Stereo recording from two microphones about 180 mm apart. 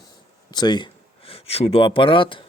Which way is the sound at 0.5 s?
25° left (ahead or behind).